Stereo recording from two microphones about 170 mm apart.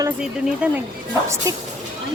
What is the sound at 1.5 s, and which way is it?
Speech, 20° right (ahead or behind).